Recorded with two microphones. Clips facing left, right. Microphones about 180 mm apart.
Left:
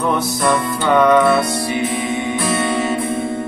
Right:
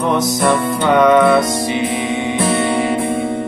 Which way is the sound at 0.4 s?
20° right (ahead or behind).